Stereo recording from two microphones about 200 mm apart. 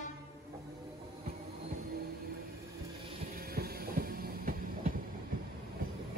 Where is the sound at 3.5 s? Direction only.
50° right (ahead or behind).